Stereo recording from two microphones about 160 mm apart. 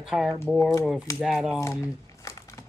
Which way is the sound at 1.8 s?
20° left (ahead or behind).